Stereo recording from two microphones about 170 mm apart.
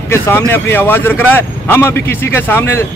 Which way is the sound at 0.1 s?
15° left (ahead or behind).